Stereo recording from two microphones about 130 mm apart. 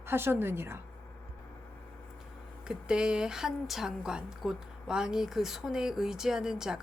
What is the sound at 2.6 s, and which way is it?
A woman's voice, 5° right (ahead or behind).